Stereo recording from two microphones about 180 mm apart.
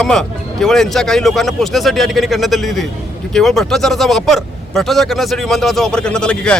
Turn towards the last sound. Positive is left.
turn(degrees=5)  # may be behind; listen again after turning